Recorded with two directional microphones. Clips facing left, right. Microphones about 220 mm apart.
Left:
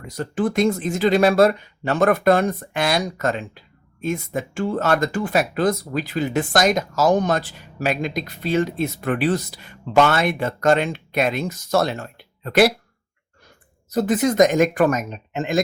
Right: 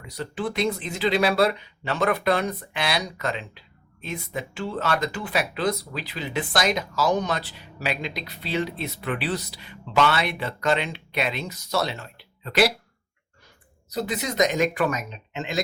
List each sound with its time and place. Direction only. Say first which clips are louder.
0.0 s speech: left 7 dB; 45° left (ahead or behind)
13.9 s speech: left 9 dB; 50° left (ahead or behind)